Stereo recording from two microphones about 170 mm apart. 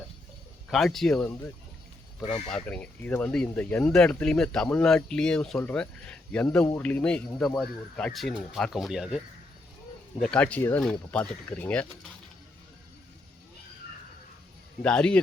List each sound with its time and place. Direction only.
0.7 s speech: centre (ahead or behind)
2.2 s speech: 40° left (ahead or behind)
2.5 s speech: 5° left (ahead or behind)
14.8 s speech: 5° left (ahead or behind)